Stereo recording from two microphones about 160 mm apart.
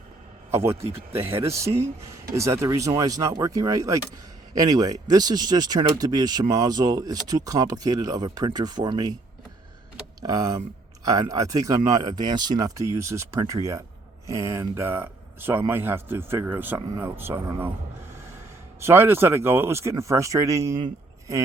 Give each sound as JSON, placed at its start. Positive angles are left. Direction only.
{"t": 0.5, "sound": "speech", "side_deg": -15}
{"t": 10.2, "sound": "speech", "side_deg": -20}
{"t": 18.8, "sound": "speech", "side_deg": -15}
{"t": 20.8, "sound": "a sound", "side_deg": -20}